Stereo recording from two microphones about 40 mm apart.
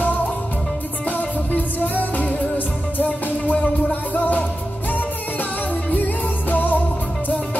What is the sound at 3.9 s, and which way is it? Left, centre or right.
Music, left.